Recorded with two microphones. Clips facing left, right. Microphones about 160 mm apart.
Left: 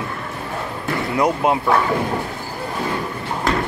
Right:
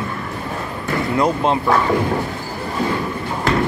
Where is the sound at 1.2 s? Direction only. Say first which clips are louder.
Even; 10° left (ahead or behind).